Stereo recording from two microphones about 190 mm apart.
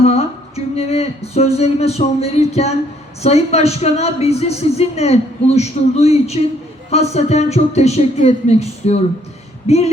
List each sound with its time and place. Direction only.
0.0 s speech: 35° left (ahead or behind)